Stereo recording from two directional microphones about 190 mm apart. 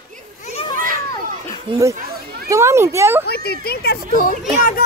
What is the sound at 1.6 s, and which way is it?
A child's voice, 15° right (ahead or behind).